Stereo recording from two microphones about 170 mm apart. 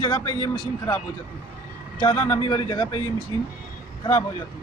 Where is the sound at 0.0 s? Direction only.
25° left (ahead or behind).